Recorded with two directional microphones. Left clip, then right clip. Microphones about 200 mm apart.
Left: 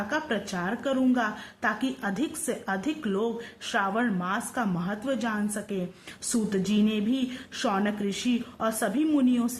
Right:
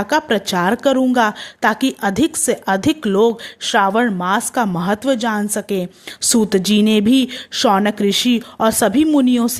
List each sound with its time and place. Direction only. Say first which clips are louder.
0.1 s a woman's voice: right 15 dB; 40° right (ahead or behind)